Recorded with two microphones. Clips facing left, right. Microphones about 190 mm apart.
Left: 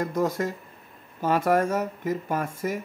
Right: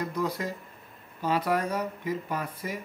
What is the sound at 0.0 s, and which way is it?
Speech, 45° left (ahead or behind).